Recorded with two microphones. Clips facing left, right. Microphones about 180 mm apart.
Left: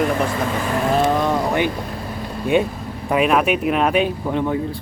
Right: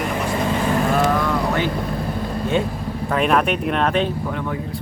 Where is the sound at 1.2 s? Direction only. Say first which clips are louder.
Left 2 dB; 15° left (ahead or behind).